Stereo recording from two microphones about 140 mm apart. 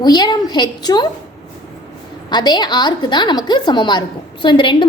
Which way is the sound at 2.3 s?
30° left (ahead or behind).